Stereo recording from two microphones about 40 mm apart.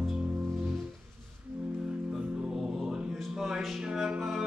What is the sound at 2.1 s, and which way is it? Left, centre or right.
Music, centre.